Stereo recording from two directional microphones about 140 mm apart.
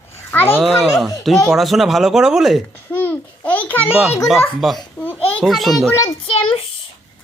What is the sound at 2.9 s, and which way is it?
Babbling, 10° left (ahead or behind).